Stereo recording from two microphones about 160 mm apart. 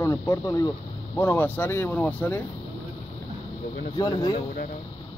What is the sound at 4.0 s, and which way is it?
Speech, 25° left (ahead or behind).